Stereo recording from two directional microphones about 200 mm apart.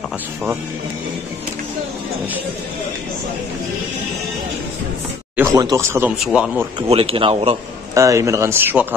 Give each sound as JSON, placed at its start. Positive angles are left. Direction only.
{"t": 5.3, "sound": "speech", "side_deg": -15}
{"t": 6.9, "sound": "speech", "side_deg": -30}
{"t": 7.9, "sound": "speech", "side_deg": -15}